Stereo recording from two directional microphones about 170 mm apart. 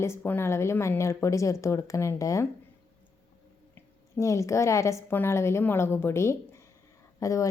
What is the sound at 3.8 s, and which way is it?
A woman's voice, 15° left (ahead or behind).